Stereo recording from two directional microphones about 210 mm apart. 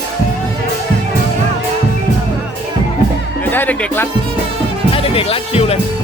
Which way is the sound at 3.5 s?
10° left (ahead or behind).